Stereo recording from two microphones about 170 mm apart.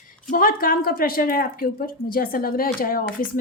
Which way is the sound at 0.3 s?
55° left (ahead or behind).